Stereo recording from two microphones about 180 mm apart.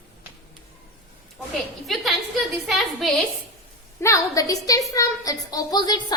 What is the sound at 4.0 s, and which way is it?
A woman's voice, 20° left (ahead or behind).